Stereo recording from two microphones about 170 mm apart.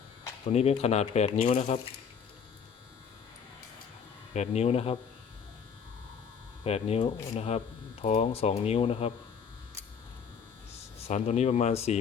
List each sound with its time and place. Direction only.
0.4 s speech: 35° left (ahead or behind)
4.4 s speech: 40° left (ahead or behind)
6.7 s speech: 35° left (ahead or behind)
10.7 s speech: 40° left (ahead or behind)